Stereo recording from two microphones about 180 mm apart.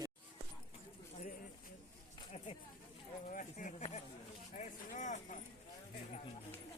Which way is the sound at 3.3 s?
45° left (ahead or behind).